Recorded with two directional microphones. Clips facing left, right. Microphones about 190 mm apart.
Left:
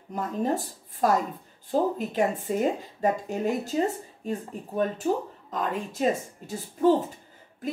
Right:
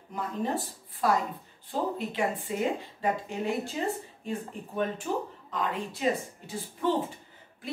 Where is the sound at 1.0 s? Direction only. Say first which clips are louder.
Left 3 dB; 45° left (ahead or behind).